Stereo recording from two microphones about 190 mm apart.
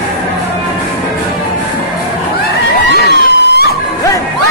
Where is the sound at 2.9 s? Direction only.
60° left (ahead or behind).